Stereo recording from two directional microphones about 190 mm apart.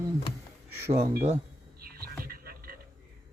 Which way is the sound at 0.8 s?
15° right (ahead or behind).